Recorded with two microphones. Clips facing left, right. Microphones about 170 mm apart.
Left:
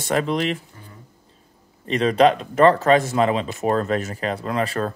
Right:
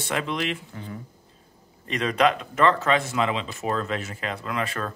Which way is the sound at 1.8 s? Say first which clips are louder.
Left 6 dB; 30° left (ahead or behind).